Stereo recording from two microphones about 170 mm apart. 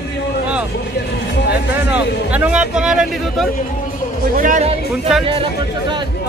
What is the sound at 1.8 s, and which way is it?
A man's voice, 10° right (ahead or behind).